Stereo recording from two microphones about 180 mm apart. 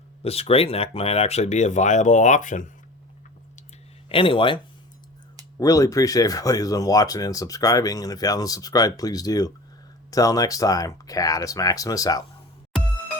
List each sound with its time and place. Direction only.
0.2 s speech: 35° left (ahead or behind)
4.1 s speech: 30° left (ahead or behind)